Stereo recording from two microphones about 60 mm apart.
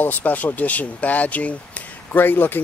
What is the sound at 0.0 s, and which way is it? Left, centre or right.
Speech, left.